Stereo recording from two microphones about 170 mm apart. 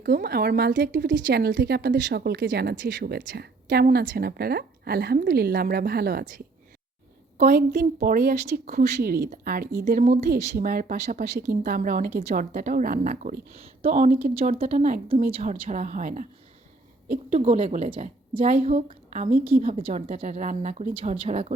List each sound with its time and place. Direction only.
0.0 s speech: 65° right (ahead or behind)
3.8 s a woman's voice: 60° right (ahead or behind)
7.5 s speech: 70° right (ahead or behind)
8.0 s a woman's voice: 60° right (ahead or behind)
13.6 s a woman's voice: 40° right (ahead or behind)
17.3 s a woman's voice: 35° right (ahead or behind); by 19.6 s 50° right (ahead or behind)
19.6 s a woman's voice: 35° right (ahead or behind)